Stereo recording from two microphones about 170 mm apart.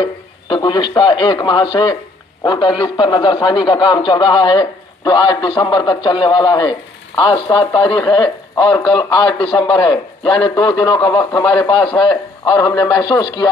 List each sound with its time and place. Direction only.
0.0 s speech: 30° left (ahead or behind)